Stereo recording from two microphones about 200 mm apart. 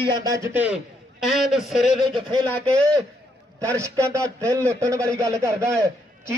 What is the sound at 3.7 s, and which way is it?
Speech, 15° right (ahead or behind).